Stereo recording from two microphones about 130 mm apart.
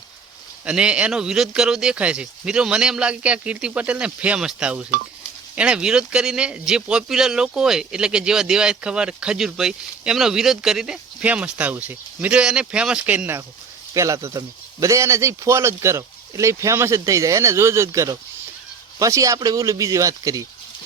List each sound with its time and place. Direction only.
0.6 s speech: 10° right (ahead or behind); by 20.5 s 25° right (ahead or behind)